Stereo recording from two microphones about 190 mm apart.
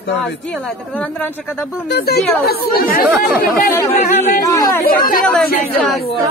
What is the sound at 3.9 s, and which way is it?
Speech, 40° left (ahead or behind).